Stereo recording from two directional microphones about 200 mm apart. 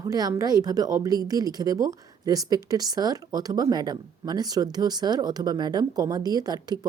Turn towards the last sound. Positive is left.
turn(degrees=-20)  # may be behind; listen again after turning